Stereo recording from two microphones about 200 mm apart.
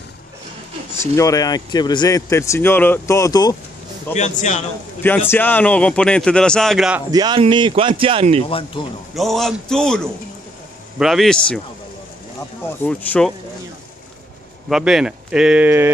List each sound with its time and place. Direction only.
0.9 s speech: 15° left (ahead or behind)
4.1 s a man's voice: 35° left (ahead or behind)
5.0 s a man's voice: 10° left (ahead or behind)
7.1 s speech: 20° right (ahead or behind)
8.5 s speech: 25° left (ahead or behind)
9.1 s a man's voice: centre (ahead or behind)
12.6 s speech: 10° left (ahead or behind)
14.7 s a man's voice: 5° right (ahead or behind)